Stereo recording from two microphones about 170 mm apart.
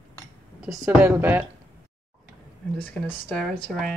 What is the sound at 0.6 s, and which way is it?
Speech, 5° right (ahead or behind).